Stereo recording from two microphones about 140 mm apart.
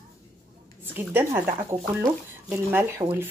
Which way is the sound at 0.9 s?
15° right (ahead or behind).